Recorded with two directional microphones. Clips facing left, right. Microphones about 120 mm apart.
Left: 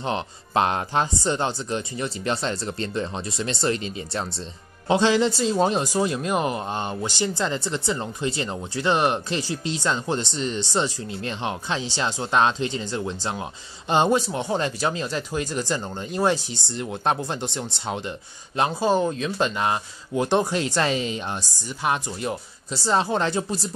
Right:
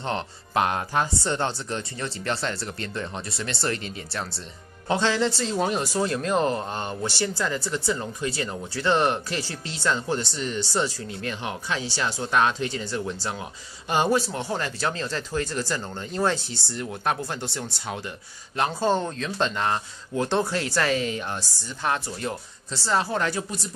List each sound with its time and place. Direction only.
0.6 s speech: 25° left (ahead or behind)
5.6 s speech: 25° left (ahead or behind)
18.6 s speech: 10° left (ahead or behind)